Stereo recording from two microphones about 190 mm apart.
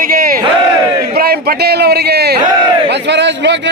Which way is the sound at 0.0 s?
50° right (ahead or behind).